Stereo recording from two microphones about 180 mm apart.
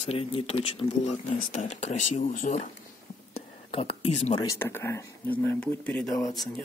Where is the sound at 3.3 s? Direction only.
30° left (ahead or behind).